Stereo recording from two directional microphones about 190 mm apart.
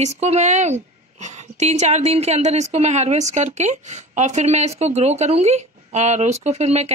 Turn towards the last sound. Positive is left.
turn(degrees=-35)  # may be behind; listen again after turning